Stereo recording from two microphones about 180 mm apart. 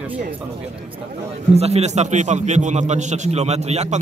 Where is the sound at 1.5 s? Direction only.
35° right (ahead or behind).